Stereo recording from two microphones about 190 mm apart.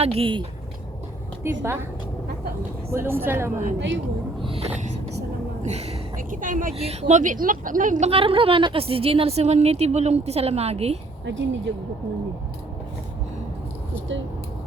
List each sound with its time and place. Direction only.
0.0 s speech: 30° right (ahead or behind)
1.5 s a woman's voice: 15° right (ahead or behind)
2.9 s a woman's voice: 10° right (ahead or behind)
3.8 s speech: 75° right (ahead or behind)
4.4 s a sound: 30° right (ahead or behind)
5.6 s a woman's voice: 35° right (ahead or behind)
11.3 s speech: 75° right (ahead or behind)